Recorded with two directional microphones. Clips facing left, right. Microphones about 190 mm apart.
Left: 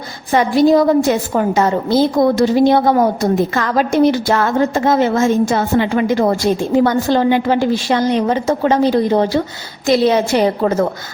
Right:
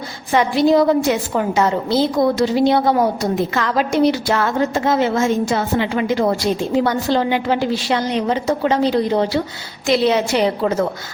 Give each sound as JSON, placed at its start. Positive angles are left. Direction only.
{"t": 0.3, "sound": "a woman's voice", "side_deg": 45}